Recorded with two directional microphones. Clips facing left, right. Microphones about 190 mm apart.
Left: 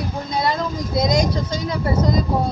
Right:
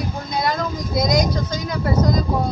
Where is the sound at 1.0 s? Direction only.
30° left (ahead or behind).